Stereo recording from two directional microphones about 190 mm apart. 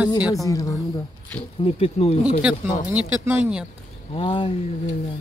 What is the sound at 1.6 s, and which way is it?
Speech, 30° left (ahead or behind).